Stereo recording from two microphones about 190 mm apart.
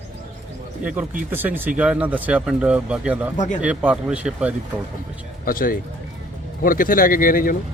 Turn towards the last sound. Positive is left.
turn(degrees=45)  # may be behind; listen again after turning